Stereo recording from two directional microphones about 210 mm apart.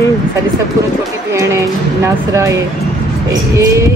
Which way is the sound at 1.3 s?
15° right (ahead or behind).